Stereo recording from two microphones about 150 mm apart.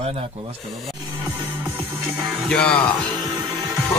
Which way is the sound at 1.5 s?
15° right (ahead or behind).